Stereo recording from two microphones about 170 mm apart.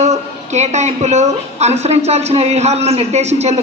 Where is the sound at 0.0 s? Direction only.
40° right (ahead or behind).